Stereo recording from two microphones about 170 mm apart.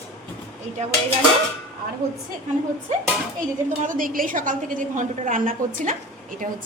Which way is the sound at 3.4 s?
50° right (ahead or behind).